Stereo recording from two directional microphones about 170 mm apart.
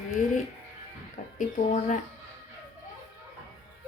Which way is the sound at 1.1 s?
50° left (ahead or behind).